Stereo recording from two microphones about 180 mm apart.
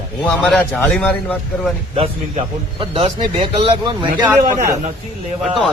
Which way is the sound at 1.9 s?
30° right (ahead or behind).